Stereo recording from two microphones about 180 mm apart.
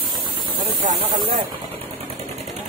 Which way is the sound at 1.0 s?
25° right (ahead or behind).